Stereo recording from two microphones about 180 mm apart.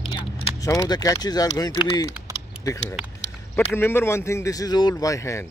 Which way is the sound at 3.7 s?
10° left (ahead or behind).